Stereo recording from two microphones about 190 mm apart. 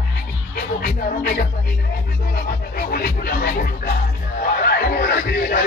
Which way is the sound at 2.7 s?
50° left (ahead or behind).